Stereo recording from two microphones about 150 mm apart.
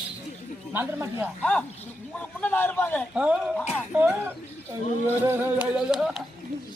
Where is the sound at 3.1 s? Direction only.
5° right (ahead or behind).